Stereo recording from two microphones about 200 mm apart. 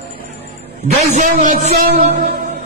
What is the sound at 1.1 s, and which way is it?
Speech, 40° right (ahead or behind).